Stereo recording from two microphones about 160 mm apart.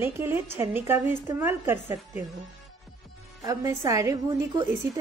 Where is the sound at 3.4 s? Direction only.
20° right (ahead or behind).